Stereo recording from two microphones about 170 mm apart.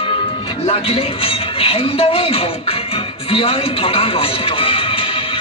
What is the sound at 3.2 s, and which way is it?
A man's voice, 35° left (ahead or behind).